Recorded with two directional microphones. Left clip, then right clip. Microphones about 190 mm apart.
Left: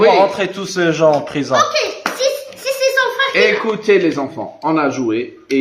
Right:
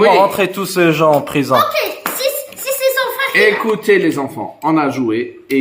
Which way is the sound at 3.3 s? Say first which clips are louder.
Right 5 dB; 50° right (ahead or behind).